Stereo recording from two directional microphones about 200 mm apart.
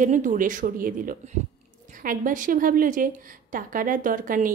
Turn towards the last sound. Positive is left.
turn(degrees=-40)  # may be behind; listen again after turning